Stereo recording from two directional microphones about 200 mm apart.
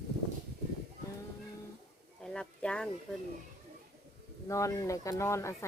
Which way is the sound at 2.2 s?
5° left (ahead or behind).